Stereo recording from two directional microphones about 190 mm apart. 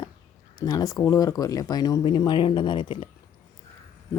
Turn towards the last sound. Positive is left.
turn(degrees=25)  # may be behind; listen again after turning